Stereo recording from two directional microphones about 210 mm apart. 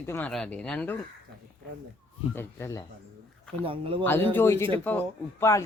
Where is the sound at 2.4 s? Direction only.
10° left (ahead or behind).